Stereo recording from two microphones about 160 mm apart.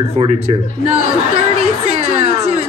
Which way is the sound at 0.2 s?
35° right (ahead or behind).